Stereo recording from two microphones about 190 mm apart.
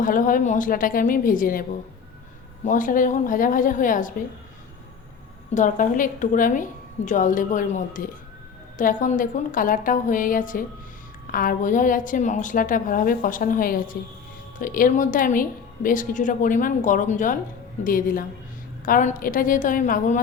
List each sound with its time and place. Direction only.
0.0 s speech: 45° left (ahead or behind)
2.6 s speech: 45° left (ahead or behind)
5.5 s speech: 40° left (ahead or behind)